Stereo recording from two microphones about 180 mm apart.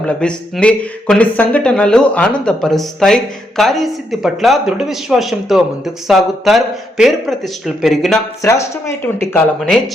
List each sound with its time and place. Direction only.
0.2 s speech: 5° left (ahead or behind)
8.4 s speech: 15° left (ahead or behind)
9.6 s speech: centre (ahead or behind)